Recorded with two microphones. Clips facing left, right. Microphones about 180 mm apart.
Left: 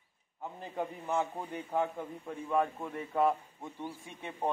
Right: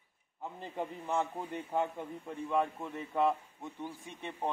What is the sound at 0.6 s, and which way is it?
A man's voice, 10° left (ahead or behind).